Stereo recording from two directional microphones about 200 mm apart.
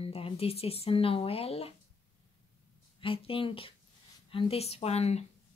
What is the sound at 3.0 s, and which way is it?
A woman's voice, 25° left (ahead or behind).